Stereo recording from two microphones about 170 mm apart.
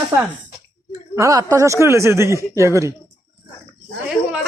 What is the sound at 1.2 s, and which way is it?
Speech, 20° right (ahead or behind).